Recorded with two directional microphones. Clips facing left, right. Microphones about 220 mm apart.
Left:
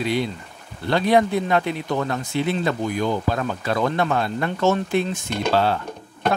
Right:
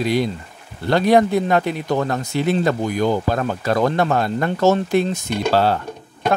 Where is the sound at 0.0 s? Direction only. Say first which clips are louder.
Right 4 dB; 40° right (ahead or behind).